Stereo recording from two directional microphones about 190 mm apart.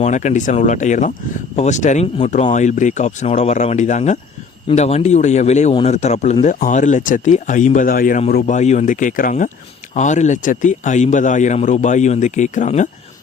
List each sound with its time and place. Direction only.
0.0 s speech: 40° left (ahead or behind)